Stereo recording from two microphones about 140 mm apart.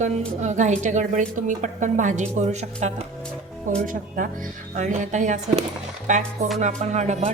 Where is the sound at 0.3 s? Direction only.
55° right (ahead or behind).